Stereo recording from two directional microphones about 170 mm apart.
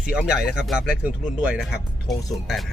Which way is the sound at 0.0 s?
5° right (ahead or behind).